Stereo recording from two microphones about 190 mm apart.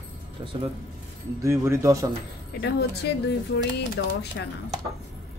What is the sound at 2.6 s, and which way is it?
Speech, 60° left (ahead or behind).